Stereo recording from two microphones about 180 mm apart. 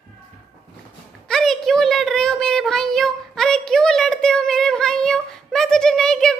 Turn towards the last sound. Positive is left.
turn(degrees=5)  # may be behind; listen again after turning